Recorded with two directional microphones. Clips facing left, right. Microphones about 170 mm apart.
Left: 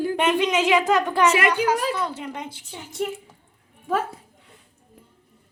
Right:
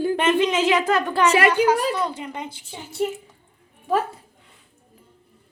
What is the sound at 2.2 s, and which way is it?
Speech, 10° right (ahead or behind).